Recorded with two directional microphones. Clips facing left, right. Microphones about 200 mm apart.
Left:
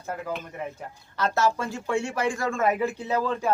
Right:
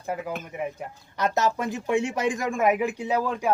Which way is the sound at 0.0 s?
15° right (ahead or behind).